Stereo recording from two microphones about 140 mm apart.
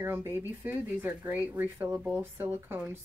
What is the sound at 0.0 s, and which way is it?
Speech, 15° right (ahead or behind).